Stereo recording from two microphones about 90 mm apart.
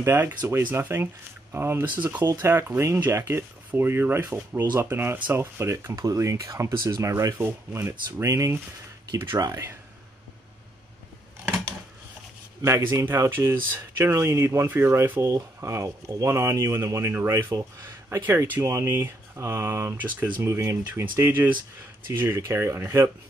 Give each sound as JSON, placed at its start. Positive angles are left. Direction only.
{"t": 0.0, "sound": "speech", "side_deg": -25}
{"t": 5.9, "sound": "speech", "side_deg": -40}
{"t": 8.2, "sound": "speech", "side_deg": -35}
{"t": 12.6, "sound": "speech", "side_deg": -35}